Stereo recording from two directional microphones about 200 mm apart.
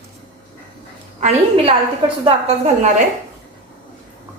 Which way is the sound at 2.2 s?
30° right (ahead or behind).